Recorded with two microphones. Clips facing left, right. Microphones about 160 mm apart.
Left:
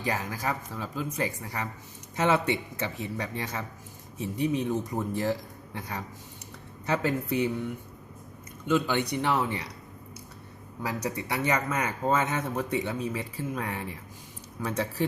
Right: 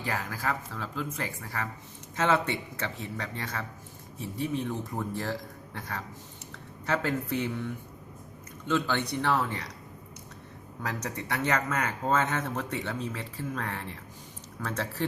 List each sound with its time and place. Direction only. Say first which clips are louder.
0.0 s speech: left 2 dB; 20° left (ahead or behind)
10.8 s speech: left 3 dB; 10° left (ahead or behind)